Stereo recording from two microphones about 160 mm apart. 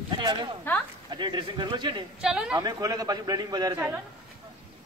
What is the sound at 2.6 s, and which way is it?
Speech, 25° right (ahead or behind).